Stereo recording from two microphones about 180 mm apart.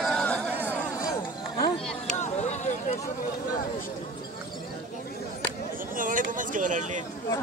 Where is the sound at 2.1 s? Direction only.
40° left (ahead or behind).